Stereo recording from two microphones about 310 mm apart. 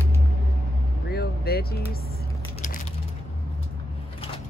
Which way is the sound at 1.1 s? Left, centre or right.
Left.